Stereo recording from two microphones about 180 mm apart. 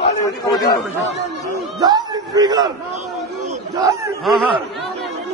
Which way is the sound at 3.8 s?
15° right (ahead or behind).